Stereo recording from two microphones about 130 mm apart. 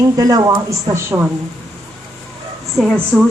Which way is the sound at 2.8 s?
Centre (ahead or behind).